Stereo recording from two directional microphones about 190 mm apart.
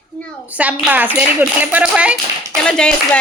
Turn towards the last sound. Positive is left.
turn(degrees=5)  # may be behind; listen again after turning